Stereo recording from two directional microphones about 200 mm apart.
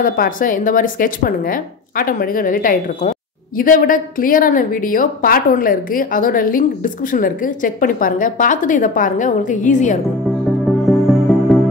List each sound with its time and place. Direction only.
0.0 s speech: 45° left (ahead or behind)
10.9 s music: centre (ahead or behind)